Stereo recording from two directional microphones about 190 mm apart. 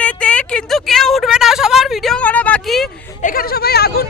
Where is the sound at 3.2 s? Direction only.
45° left (ahead or behind).